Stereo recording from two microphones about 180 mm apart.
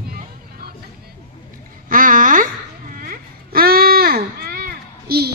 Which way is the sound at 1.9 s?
50° right (ahead or behind).